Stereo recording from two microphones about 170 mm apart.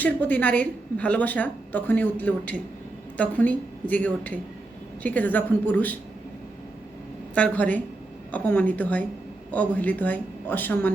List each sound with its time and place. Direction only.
0.0 s a woman's voice: 10° left (ahead or behind)
7.3 s a woman's voice: 10° left (ahead or behind)